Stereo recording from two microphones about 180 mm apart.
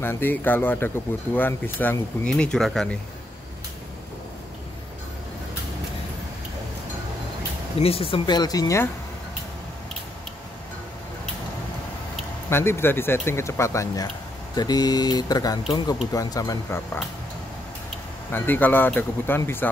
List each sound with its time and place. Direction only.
0.0 s speech: 10° left (ahead or behind)
7.8 s speech: 30° left (ahead or behind); by 8.9 s 15° left (ahead or behind)
12.4 s speech: 15° left (ahead or behind)
18.3 s speech: 10° left (ahead or behind)